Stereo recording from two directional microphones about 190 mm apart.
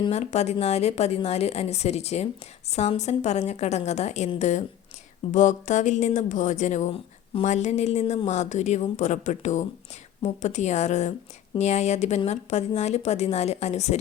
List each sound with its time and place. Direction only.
0.0 s speech: 35° left (ahead or behind)